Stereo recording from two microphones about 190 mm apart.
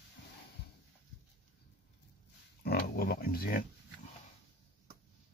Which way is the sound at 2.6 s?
55° left (ahead or behind).